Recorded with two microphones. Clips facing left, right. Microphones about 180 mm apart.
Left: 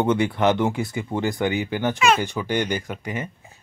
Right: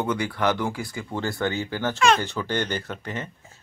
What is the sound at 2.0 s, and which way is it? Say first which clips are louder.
Speech: right 1 dB; 5° left (ahead or behind).